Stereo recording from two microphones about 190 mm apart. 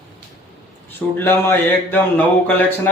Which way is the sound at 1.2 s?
10° left (ahead or behind).